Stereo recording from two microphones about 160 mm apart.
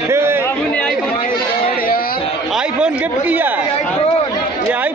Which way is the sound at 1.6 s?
65° left (ahead or behind).